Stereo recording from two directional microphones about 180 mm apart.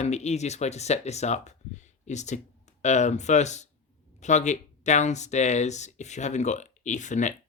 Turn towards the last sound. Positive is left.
turn(degrees=45)  # may be behind; listen again after turning